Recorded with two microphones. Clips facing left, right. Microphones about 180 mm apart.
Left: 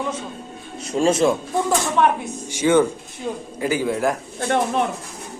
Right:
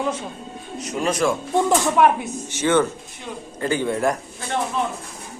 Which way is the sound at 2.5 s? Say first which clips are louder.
Left 3 dB; 10° left (ahead or behind).